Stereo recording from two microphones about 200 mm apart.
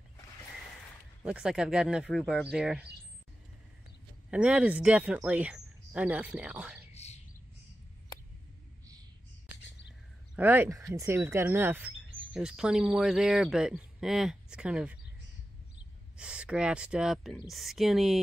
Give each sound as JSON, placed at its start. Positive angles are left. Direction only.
{"t": 1.2, "sound": "speech", "side_deg": -5}
{"t": 4.3, "sound": "speech", "side_deg": -5}
{"t": 6.9, "sound": "a sound", "side_deg": 35}
{"t": 10.3, "sound": "speech", "side_deg": -10}
{"t": 16.2, "sound": "speech", "side_deg": -5}